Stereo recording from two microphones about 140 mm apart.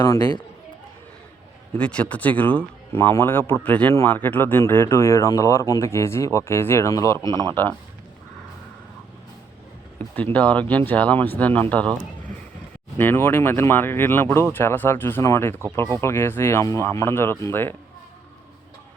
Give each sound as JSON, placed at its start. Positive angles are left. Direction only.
{"t": 0.0, "sound": "speech", "side_deg": 30}
{"t": 1.8, "sound": "speech", "side_deg": 10}
{"t": 10.3, "sound": "speech", "side_deg": 10}
{"t": 13.0, "sound": "speech", "side_deg": 15}